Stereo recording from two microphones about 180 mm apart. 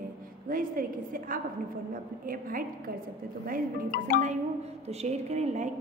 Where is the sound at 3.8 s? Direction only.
55° left (ahead or behind).